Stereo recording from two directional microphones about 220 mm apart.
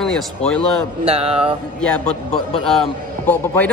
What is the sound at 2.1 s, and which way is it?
Speech, 25° left (ahead or behind).